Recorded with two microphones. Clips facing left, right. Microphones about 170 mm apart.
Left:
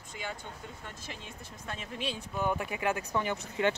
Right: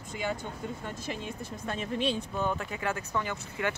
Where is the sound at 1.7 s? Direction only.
5° left (ahead or behind).